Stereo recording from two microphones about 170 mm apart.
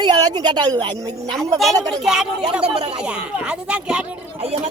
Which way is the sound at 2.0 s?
5° right (ahead or behind).